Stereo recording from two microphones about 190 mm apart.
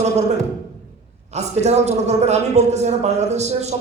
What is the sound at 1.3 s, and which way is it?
A man's voice, 35° right (ahead or behind).